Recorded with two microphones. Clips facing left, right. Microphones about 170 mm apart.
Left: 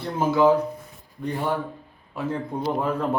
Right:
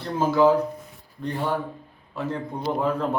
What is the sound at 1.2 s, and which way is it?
Speech, 10° left (ahead or behind).